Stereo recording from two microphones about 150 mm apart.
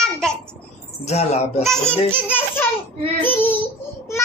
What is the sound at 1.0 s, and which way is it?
Speech, 45° left (ahead or behind).